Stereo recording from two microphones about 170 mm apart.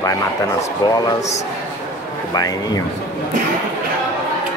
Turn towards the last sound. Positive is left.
turn(degrees=20)  # may be behind; listen again after turning